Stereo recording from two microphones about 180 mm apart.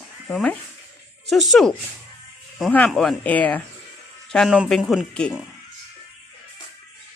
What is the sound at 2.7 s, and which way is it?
Speech, 5° left (ahead or behind).